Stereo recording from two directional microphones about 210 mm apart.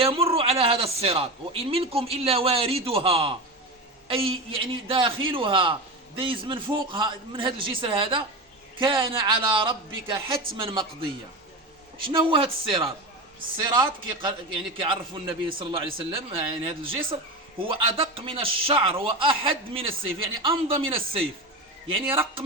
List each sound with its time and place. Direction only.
0.0 s a man's voice: 25° right (ahead or behind)
12.0 s a man's voice: 25° right (ahead or behind)